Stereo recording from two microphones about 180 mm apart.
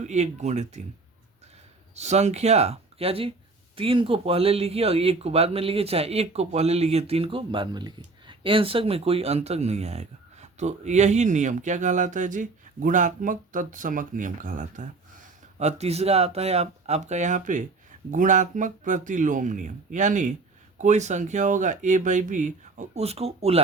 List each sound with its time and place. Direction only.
0.0 s speech: 40° right (ahead or behind)
2.0 s speech: 40° right (ahead or behind)